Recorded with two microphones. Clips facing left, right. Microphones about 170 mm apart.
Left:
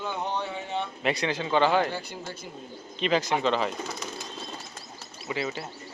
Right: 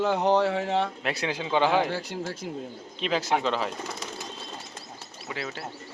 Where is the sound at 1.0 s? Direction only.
5° right (ahead or behind).